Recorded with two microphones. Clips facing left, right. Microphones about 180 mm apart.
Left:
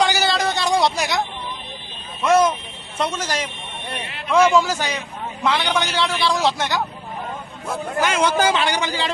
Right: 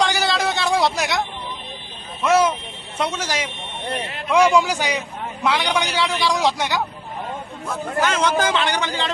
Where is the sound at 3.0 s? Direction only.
10° right (ahead or behind).